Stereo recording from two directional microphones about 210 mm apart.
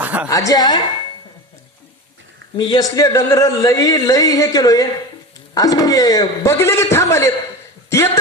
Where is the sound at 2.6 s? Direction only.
20° left (ahead or behind).